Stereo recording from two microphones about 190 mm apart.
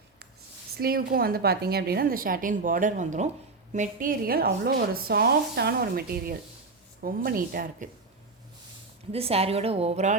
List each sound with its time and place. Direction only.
0.8 s speech: 50° right (ahead or behind)
9.1 s a woman's voice: 30° right (ahead or behind)